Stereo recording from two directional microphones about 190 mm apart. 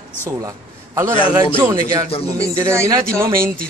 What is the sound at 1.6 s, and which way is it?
Speech, 20° right (ahead or behind).